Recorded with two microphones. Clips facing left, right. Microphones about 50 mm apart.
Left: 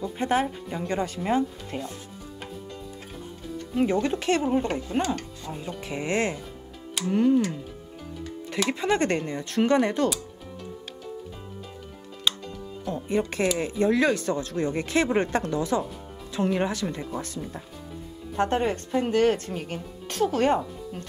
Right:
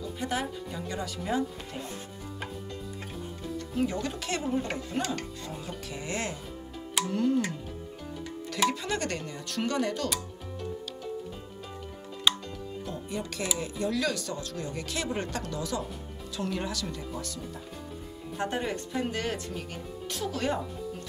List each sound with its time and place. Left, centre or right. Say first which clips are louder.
0.2 s speech: left 8 dB; left
3.8 s speech: left 8 dB; left
7.1 s speech: left 7 dB; left
8.6 s speech: left 5 dB; left
12.9 s speech: left 12 dB; left
18.3 s speech: left 7 dB; left